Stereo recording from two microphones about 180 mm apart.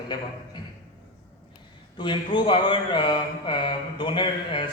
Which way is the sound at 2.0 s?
25° left (ahead or behind).